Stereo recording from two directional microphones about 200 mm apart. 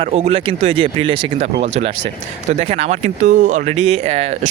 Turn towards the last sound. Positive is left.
turn(degrees=-30)  # may be behind; listen again after turning